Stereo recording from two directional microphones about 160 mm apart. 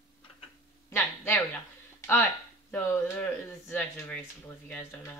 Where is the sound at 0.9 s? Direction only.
15° left (ahead or behind).